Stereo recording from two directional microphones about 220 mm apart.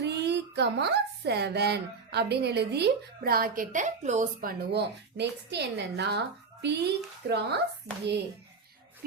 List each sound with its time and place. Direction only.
0.0 s speech: 50° right (ahead or behind)